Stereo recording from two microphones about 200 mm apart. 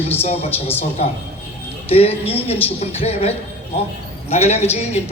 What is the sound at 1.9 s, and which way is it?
A woman's voice, 30° left (ahead or behind).